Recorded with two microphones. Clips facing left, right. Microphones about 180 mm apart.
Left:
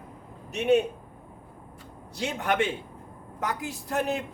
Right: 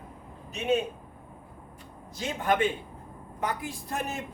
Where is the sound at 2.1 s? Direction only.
75° left (ahead or behind).